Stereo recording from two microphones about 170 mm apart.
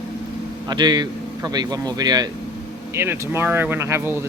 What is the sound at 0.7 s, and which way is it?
Speech, 25° right (ahead or behind).